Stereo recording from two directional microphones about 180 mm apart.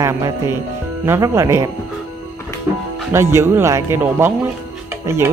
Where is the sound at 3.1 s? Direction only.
15° right (ahead or behind).